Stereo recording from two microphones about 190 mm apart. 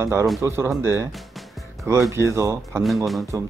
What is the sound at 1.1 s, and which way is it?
Music, centre (ahead or behind).